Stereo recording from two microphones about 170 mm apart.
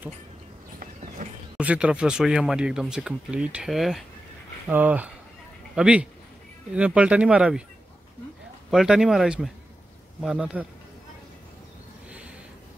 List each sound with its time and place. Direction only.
1.2 s a sound: 50° right (ahead or behind)
1.6 s speech: 5° right (ahead or behind)
8.6 s speech: centre (ahead or behind)